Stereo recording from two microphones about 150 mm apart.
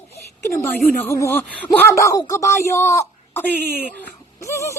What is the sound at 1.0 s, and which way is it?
Speech, 15° left (ahead or behind).